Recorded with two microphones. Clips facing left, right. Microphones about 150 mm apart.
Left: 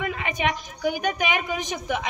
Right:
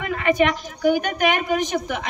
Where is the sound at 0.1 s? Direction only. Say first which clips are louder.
Right 7 dB; 55° right (ahead or behind).